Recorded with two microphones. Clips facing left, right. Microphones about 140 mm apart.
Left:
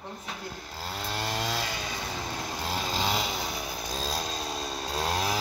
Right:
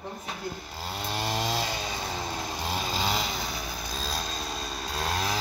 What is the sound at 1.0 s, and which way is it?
Chainsaw, 20° right (ahead or behind).